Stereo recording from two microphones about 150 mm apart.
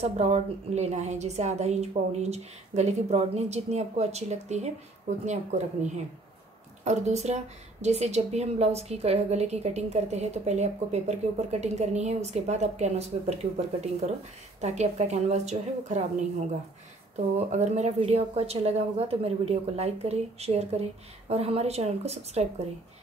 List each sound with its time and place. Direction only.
0.0 s a woman's voice: 45° right (ahead or behind)
17.5 s a woman's voice: 50° right (ahead or behind)